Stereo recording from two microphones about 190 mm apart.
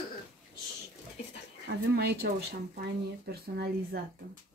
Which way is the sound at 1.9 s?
60° right (ahead or behind).